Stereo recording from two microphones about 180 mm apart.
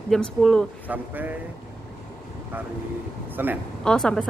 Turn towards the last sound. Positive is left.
turn(degrees=5)  # may be behind; listen again after turning